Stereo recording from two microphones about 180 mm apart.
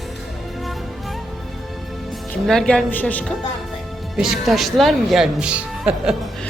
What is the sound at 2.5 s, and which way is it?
A man's voice, 5° left (ahead or behind).